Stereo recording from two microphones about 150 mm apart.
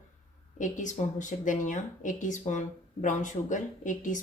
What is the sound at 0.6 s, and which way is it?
A woman's voice, 55° left (ahead or behind).